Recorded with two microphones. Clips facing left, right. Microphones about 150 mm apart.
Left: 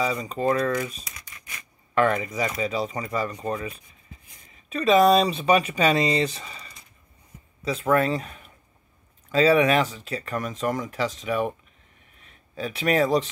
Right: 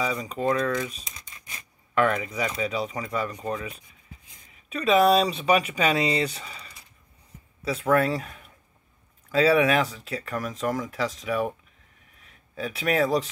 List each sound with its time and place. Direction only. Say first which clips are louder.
0.0 s speech: left 2 dB; centre (ahead or behind)
1.0 s a sound: left 1 dB; 25° right (ahead or behind)
2.0 s speech: left 2 dB; centre (ahead or behind)
4.7 s speech: left 2 dB; 5° right (ahead or behind)
12.5 s speech: left 2 dB; centre (ahead or behind)